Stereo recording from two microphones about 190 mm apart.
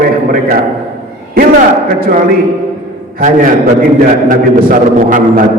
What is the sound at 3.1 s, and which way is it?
A man's voice, 45° right (ahead or behind).